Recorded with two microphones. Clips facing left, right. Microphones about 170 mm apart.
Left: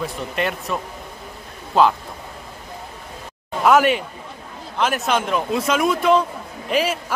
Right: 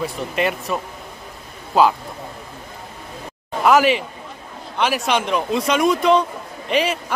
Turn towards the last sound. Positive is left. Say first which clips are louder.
# right 1 dB
turn(degrees=5)  # may be behind; listen again after turning